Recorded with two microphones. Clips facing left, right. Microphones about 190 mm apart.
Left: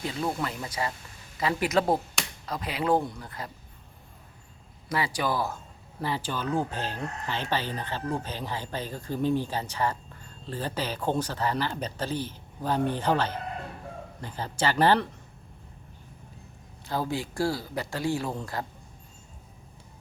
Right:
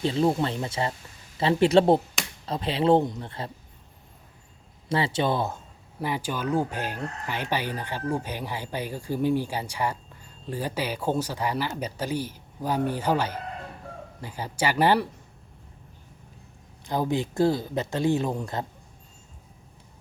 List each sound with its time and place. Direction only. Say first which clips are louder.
0.0 s speech: right 7 dB; 30° right (ahead or behind)
4.9 s speech: right 4 dB; 25° right (ahead or behind); by 15.1 s 10° right (ahead or behind)
16.8 s speech: right 4 dB; 15° right (ahead or behind)